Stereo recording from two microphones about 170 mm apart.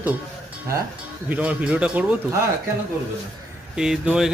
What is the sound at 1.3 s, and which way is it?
Speech, 10° right (ahead or behind).